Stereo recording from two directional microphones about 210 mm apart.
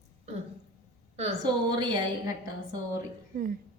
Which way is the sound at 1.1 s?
20° right (ahead or behind).